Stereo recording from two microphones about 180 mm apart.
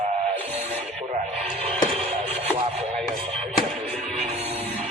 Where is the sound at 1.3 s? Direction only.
35° right (ahead or behind).